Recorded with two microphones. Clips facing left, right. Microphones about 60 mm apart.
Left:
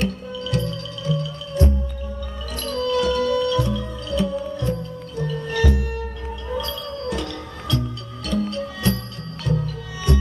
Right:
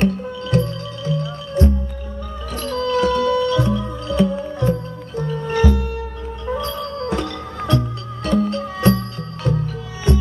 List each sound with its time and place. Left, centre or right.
0.0 s music: right